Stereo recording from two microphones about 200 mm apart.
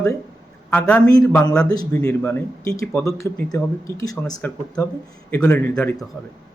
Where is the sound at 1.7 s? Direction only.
20° left (ahead or behind).